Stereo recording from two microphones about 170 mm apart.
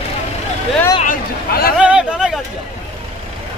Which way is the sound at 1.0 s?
60° left (ahead or behind).